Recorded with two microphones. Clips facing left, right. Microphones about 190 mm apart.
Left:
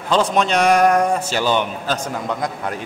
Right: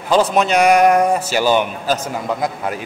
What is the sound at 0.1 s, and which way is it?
A man's voice, 5° right (ahead or behind).